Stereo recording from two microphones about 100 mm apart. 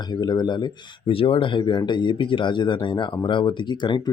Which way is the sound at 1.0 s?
65° left (ahead or behind).